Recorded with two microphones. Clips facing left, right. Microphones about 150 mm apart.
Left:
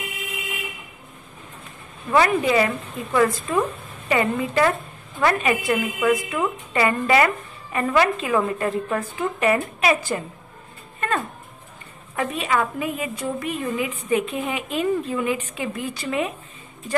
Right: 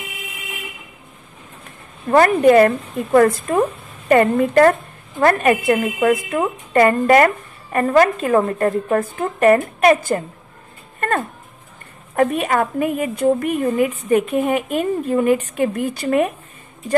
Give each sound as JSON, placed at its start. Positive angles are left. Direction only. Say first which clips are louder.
{"t": 2.0, "sound": "a woman's voice", "louder": "right 7 dB", "side_deg": -50}
{"t": 6.7, "sound": "a woman's voice", "louder": "right 8 dB", "side_deg": -50}
{"t": 11.0, "sound": "dog", "louder": "right 4 dB", "side_deg": -50}
{"t": 12.2, "sound": "a woman's voice", "louder": "right 6 dB", "side_deg": -50}